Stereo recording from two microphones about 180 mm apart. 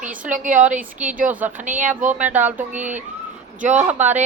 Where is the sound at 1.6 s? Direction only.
45° right (ahead or behind).